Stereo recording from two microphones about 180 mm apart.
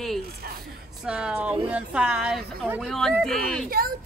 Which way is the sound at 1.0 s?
5° right (ahead or behind).